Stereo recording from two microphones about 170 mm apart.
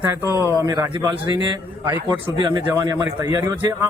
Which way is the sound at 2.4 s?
25° right (ahead or behind).